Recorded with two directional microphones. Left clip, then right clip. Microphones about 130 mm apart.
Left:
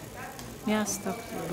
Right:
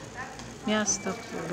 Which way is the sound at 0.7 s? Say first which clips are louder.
Right 2 dB; 20° left (ahead or behind).